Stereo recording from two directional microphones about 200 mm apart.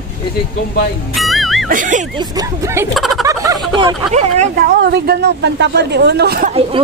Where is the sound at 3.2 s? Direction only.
20° right (ahead or behind).